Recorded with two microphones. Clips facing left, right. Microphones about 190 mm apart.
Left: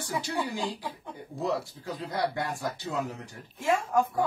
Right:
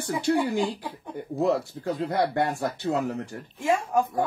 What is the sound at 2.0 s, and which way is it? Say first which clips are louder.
Speech: right 5 dB; 60° right (ahead or behind).